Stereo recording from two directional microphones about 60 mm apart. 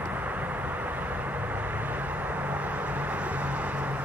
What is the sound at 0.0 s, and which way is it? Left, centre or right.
Vehicle, right.